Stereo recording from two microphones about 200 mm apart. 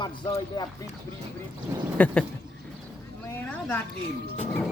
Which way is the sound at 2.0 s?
5° left (ahead or behind).